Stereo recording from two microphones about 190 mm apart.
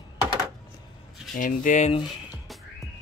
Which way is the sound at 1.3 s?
45° left (ahead or behind).